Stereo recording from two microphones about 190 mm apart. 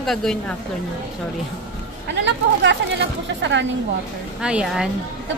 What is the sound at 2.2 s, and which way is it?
Speech, 70° right (ahead or behind).